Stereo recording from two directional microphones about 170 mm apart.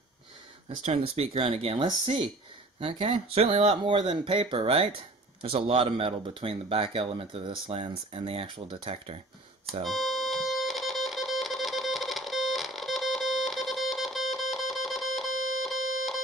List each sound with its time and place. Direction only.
0.8 s speech: 35° right (ahead or behind)
9.8 s music: centre (ahead or behind)